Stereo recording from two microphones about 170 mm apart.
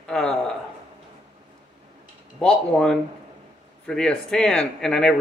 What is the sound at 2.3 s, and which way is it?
Speech, 5° left (ahead or behind).